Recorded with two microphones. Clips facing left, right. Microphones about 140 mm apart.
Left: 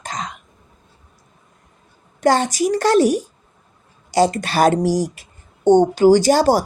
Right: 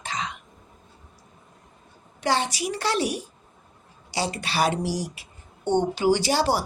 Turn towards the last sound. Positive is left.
turn(degrees=45)  # may be behind; listen again after turning